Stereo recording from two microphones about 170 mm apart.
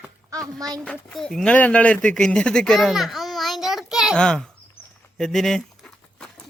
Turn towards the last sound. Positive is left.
turn(degrees=5)  # may be behind; listen again after turning